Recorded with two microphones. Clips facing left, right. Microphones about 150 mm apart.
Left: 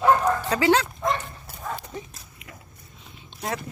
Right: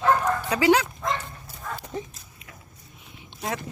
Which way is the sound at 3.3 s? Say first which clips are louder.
Even; 15° right (ahead or behind).